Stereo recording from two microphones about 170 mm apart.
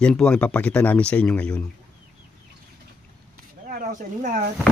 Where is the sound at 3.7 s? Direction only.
55° right (ahead or behind).